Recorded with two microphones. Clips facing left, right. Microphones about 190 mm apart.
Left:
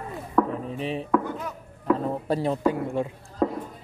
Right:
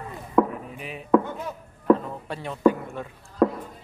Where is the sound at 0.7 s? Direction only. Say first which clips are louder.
Left 8 dB; 30° left (ahead or behind).